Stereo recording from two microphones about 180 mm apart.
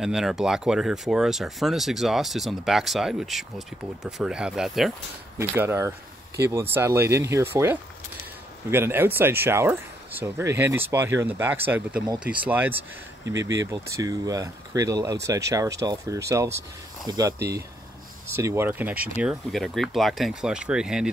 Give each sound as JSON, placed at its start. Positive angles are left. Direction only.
{"t": 0.0, "sound": "speech", "side_deg": 0}
{"t": 5.4, "sound": "speech", "side_deg": -15}
{"t": 17.4, "sound": "speech", "side_deg": -65}
{"t": 18.3, "sound": "speech", "side_deg": -15}
{"t": 19.2, "sound": "speech", "side_deg": 0}